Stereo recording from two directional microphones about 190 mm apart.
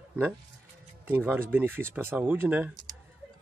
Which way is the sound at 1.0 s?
10° right (ahead or behind).